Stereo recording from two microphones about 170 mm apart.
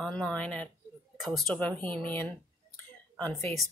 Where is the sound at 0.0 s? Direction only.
5° left (ahead or behind).